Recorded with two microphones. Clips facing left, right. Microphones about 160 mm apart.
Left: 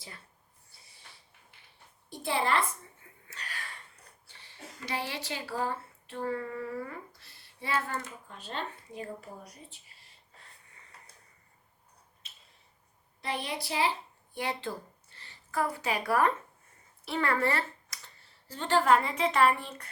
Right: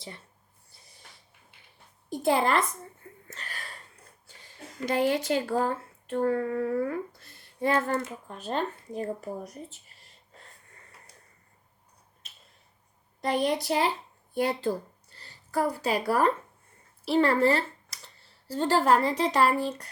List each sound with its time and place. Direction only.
2.2 s a sound: 45° right (ahead or behind)
4.9 s female singing: 45° right (ahead or behind)
13.2 s female singing: 45° right (ahead or behind)
15.1 s speech: 40° right (ahead or behind)